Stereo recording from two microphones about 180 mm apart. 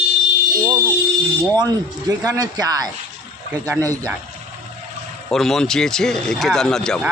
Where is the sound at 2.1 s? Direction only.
20° right (ahead or behind).